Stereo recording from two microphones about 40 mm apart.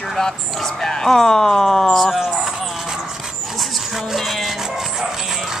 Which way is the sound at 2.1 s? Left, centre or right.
Centre.